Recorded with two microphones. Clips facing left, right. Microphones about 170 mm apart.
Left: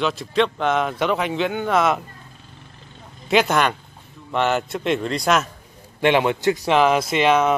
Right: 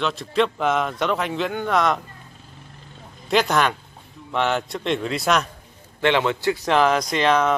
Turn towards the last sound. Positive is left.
turn(degrees=5)  # may be behind; listen again after turning